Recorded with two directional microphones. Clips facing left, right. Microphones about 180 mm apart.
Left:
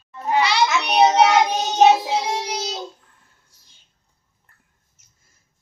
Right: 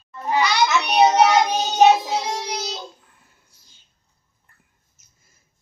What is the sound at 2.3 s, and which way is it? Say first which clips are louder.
Child singing: left 2 dB; 30° left (ahead or behind).